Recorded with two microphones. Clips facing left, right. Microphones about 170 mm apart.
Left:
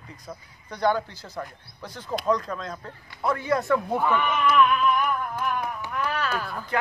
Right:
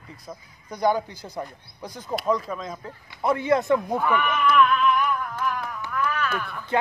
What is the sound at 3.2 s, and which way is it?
Speech, 25° right (ahead or behind).